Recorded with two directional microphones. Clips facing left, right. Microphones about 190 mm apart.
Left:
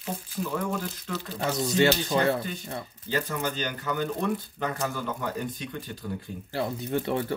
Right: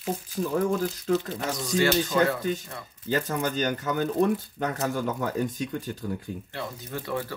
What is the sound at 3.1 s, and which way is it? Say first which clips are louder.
Speech: right 3 dB; 45° right (ahead or behind).